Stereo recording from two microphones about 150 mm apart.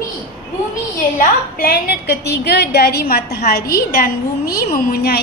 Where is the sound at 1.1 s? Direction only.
80° left.